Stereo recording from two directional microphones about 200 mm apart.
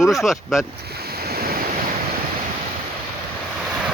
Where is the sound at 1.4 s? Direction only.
50° right (ahead or behind).